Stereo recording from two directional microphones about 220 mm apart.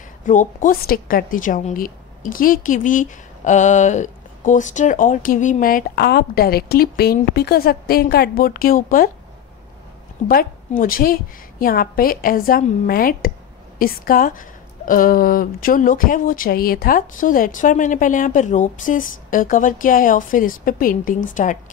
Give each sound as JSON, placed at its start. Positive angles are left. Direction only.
{"t": 0.2, "sound": "a woman's voice", "side_deg": 35}
{"t": 10.2, "sound": "a woman's voice", "side_deg": 40}